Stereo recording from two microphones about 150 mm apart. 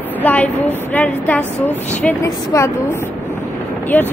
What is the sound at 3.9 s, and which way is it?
Speech, 15° left (ahead or behind).